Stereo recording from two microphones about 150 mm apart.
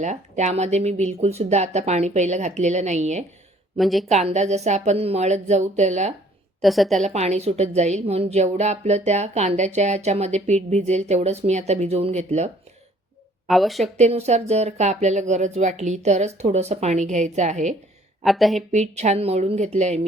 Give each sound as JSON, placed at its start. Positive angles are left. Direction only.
{"t": 0.0, "sound": "a woman's voice", "side_deg": -50}
{"t": 3.8, "sound": "a woman's voice", "side_deg": 0}
{"t": 4.1, "sound": "a woman's voice", "side_deg": -50}
{"t": 6.6, "sound": "a woman's voice", "side_deg": 0}
{"t": 7.0, "sound": "a woman's voice", "side_deg": -50}
{"t": 13.5, "sound": "a woman's voice", "side_deg": 0}
{"t": 13.8, "sound": "a woman's voice", "side_deg": -45}
{"t": 18.2, "sound": "speech", "side_deg": 0}
{"t": 18.7, "sound": "a woman's voice", "side_deg": -50}